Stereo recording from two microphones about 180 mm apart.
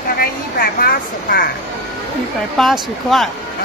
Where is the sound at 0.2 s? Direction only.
55° left (ahead or behind).